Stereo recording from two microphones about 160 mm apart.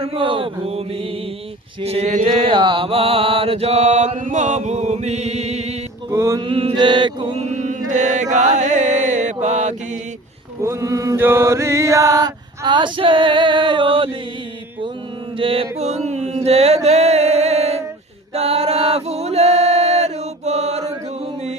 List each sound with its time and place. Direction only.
0.0 s mantra: 35° right (ahead or behind)
6.1 s mantra: 15° right (ahead or behind)
6.4 s mantra: 35° right (ahead or behind)
7.9 s chant: 50° right (ahead or behind)
10.6 s chant: 20° right (ahead or behind)
15.4 s mantra: 35° right (ahead or behind)
18.3 s male singing: 40° right (ahead or behind)